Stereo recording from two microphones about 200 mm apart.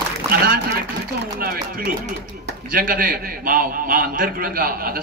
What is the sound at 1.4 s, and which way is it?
A man's voice, 50° right (ahead or behind).